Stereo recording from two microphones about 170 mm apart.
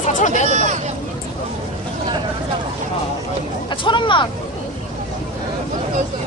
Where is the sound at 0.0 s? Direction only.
45° left (ahead or behind).